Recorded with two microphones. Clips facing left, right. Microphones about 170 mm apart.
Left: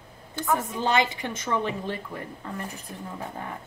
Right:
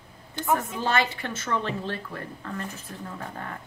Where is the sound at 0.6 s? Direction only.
15° left (ahead or behind).